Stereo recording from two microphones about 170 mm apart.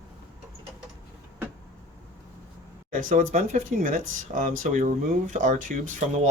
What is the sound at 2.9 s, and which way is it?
Speech, 50° right (ahead or behind).